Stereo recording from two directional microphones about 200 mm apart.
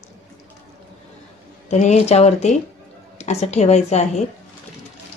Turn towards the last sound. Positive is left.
turn(degrees=35)  # may be behind; listen again after turning